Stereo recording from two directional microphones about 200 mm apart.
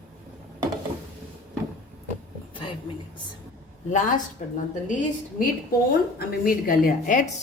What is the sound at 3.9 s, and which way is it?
Speech, 40° left (ahead or behind).